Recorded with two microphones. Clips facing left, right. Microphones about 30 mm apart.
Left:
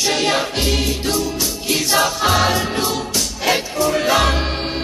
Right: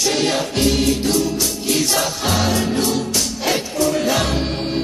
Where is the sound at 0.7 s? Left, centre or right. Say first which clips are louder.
Right 2 dB; centre.